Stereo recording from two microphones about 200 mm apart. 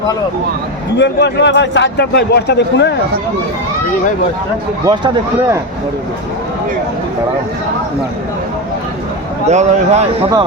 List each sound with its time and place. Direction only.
0.9 s a man's voice: 60° left (ahead or behind)
4.9 s speech: 20° right (ahead or behind)
9.5 s a man's voice: 35° right (ahead or behind)